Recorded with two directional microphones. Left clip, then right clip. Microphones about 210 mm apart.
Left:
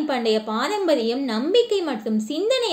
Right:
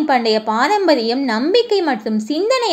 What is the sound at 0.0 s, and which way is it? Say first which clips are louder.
A woman's voice: right 7 dB; 15° right (ahead or behind).